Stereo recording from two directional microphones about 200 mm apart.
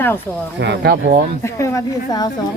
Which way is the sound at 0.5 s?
60° right (ahead or behind).